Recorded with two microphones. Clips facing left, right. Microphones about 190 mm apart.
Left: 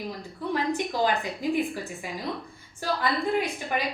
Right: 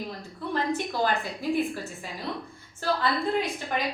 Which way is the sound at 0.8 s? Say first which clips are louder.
Left 1 dB; 15° left (ahead or behind).